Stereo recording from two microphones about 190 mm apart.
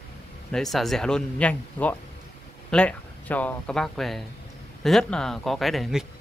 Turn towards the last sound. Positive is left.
turn(degrees=0)  # may be behind; listen again after turning